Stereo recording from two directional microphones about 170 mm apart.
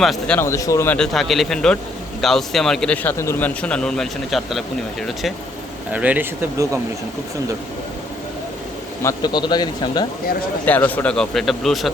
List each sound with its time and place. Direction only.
0.0 s a man's voice: centre (ahead or behind)
0.3 s speech: 15° left (ahead or behind)
0.9 s a man's voice: centre (ahead or behind)
9.0 s a man's voice: 25° left (ahead or behind)
10.7 s a man's voice: 10° left (ahead or behind)